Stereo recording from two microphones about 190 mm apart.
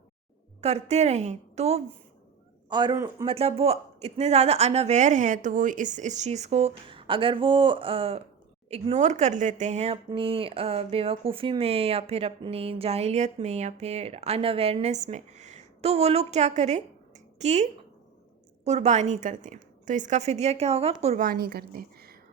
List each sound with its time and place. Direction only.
0.6 s speech: 35° right (ahead or behind)
2.6 s a man's voice: 20° right (ahead or behind)
3.2 s speech: 30° right (ahead or behind)
21.2 s a woman's voice: 55° right (ahead or behind)